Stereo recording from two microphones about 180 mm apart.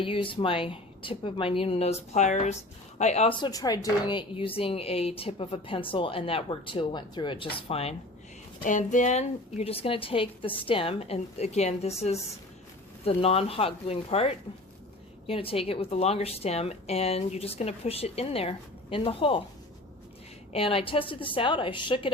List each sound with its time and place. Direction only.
0.0 s speech: 30° left (ahead or behind)
3.4 s speech: 20° left (ahead or behind)
8.6 s speech: 45° left (ahead or behind)
20.5 s speech: 30° left (ahead or behind)